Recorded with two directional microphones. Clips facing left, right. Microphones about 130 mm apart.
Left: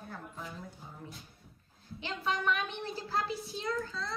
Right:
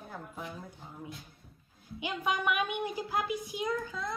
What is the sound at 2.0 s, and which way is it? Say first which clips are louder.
A woman's voice: right 2 dB; 15° right (ahead or behind).